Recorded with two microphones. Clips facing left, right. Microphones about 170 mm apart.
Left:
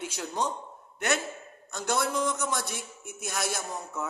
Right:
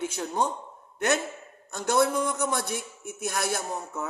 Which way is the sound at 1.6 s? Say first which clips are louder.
Right 5 dB; 50° right (ahead or behind).